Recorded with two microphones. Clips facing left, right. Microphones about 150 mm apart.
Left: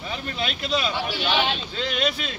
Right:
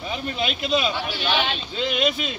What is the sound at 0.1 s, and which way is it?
Speech, 15° right (ahead or behind).